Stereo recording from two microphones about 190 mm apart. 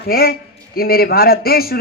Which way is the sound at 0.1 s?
50° left (ahead or behind).